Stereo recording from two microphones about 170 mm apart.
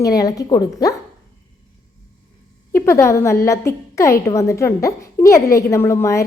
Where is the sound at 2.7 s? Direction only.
15° left (ahead or behind).